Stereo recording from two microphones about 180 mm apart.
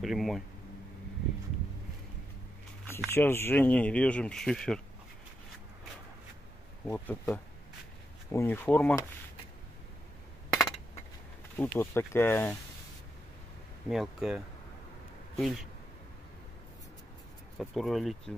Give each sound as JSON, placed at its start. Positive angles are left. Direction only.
{"t": 0.0, "sound": "speech", "side_deg": 0}
{"t": 3.1, "sound": "speech", "side_deg": 15}
{"t": 6.9, "sound": "speech", "side_deg": 10}
{"t": 11.5, "sound": "speech", "side_deg": 10}
{"t": 13.8, "sound": "speech", "side_deg": 0}
{"t": 17.6, "sound": "speech", "side_deg": 0}